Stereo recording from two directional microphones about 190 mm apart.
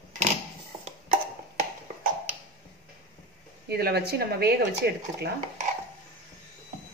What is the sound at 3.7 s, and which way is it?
Speech, 60° right (ahead or behind).